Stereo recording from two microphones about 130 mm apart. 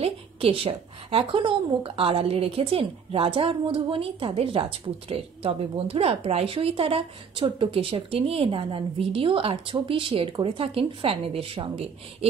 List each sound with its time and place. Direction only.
0.0 s a woman's voice: 45° right (ahead or behind)